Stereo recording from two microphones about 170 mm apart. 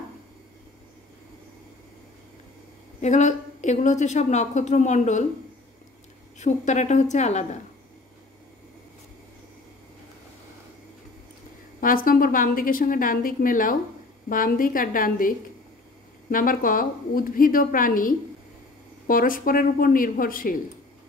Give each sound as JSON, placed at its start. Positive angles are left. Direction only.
{"t": 3.0, "sound": "a woman's voice", "side_deg": 45}
{"t": 6.4, "sound": "a woman's voice", "side_deg": 45}
{"t": 11.8, "sound": "a woman's voice", "side_deg": 55}